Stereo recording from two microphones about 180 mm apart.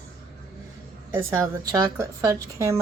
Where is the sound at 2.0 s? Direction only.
15° right (ahead or behind).